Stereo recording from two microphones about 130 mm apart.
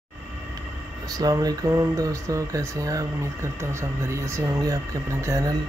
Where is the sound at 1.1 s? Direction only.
30° right (ahead or behind).